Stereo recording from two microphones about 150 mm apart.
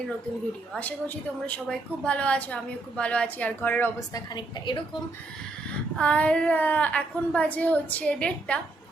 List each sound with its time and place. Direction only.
0.7 s a woman's voice: 10° left (ahead or behind)
4.1 s a woman's voice: 30° left (ahead or behind)
6.0 s a woman's voice: 10° left (ahead or behind)